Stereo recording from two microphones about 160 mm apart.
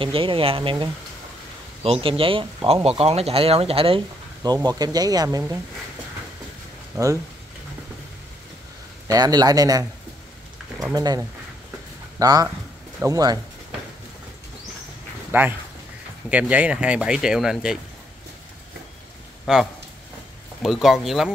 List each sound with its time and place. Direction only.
0.0 s speech: 35° right (ahead or behind)
4.6 s a man's voice: 25° right (ahead or behind)
6.9 s speech: 20° right (ahead or behind)
9.0 s a man's voice: 25° right (ahead or behind)
11.0 s a man's voice: 25° right (ahead or behind)
15.3 s speech: 10° right (ahead or behind)
19.4 s speech: centre (ahead or behind)